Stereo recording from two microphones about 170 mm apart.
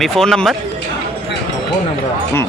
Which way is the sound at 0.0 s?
Centre (ahead or behind).